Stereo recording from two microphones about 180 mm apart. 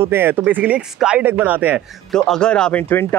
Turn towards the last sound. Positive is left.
turn(degrees=10)  # may be behind; listen again after turning